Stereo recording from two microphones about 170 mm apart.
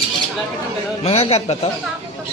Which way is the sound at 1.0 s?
35° left (ahead or behind).